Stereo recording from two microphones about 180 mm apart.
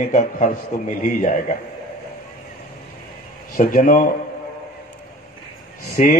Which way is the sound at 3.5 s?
50° left (ahead or behind).